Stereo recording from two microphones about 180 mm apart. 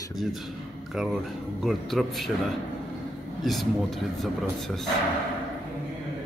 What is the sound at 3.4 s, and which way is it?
Speech, centre (ahead or behind).